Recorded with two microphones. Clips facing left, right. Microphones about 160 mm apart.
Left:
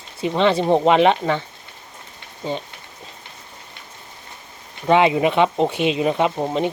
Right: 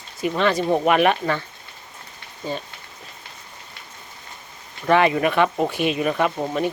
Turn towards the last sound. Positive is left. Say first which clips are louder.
# left 2 dB
turn(degrees=20)  # may be behind; listen again after turning